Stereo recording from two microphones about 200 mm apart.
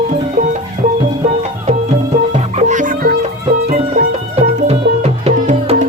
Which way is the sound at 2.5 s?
40° right (ahead or behind).